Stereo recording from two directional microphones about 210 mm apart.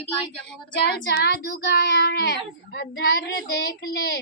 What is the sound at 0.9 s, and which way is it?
Speech, 55° left (ahead or behind).